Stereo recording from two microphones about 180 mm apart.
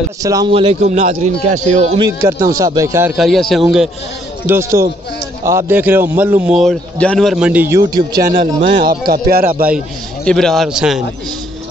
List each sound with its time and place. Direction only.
0.2 s speech: 20° right (ahead or behind)
0.5 s a man's voice: 30° right (ahead or behind)
2.0 s speech: 20° right (ahead or behind)
3.2 s a man's voice: centre (ahead or behind)
4.5 s a man's voice: 15° right (ahead or behind)
8.8 s speech: 55° right (ahead or behind)
10.2 s a man's voice: centre (ahead or behind)